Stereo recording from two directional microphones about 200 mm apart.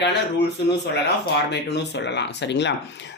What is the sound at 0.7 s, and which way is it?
Speech, 55° left (ahead or behind).